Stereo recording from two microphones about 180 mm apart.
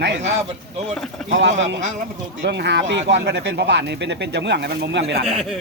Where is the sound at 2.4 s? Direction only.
75° right (ahead or behind).